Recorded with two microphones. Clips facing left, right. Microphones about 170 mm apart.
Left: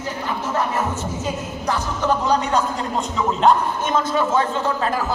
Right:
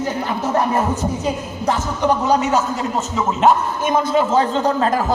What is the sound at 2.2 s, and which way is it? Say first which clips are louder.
A man's voice: right 3 dB; 5° right (ahead or behind).